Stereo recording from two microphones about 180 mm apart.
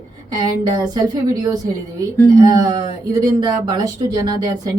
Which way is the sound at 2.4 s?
20° right (ahead or behind).